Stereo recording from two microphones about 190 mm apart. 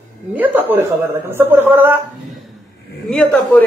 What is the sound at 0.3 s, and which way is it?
Speech, 10° right (ahead or behind).